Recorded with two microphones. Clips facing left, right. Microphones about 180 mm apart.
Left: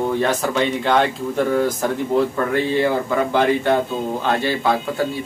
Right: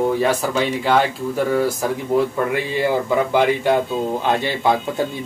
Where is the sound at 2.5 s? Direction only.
10° right (ahead or behind).